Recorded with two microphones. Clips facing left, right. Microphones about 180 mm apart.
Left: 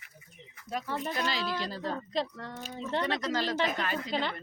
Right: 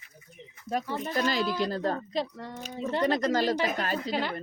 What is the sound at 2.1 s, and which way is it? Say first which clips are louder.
Speech: right 1 dB; 5° right (ahead or behind).